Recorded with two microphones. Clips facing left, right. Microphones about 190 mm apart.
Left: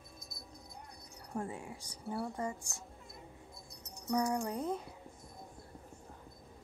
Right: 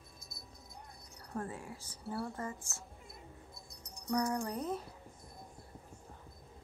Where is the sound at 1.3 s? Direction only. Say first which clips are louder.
Left 1 dB; 15° left (ahead or behind).